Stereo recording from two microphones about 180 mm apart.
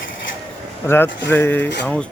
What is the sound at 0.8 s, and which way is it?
Speech, 10° left (ahead or behind).